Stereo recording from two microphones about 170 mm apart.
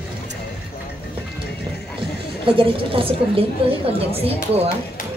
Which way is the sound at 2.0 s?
30° right (ahead or behind).